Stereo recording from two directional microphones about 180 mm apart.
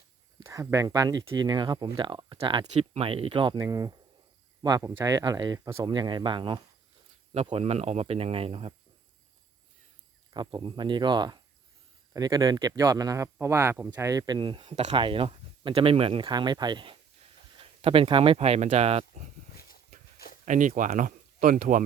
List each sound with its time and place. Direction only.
0.4 s speech: 20° right (ahead or behind)
10.3 s speech: 25° right (ahead or behind)
14.6 s speech: 40° right (ahead or behind)
19.5 s a sound: 55° left (ahead or behind)
20.4 s speech: 45° right (ahead or behind)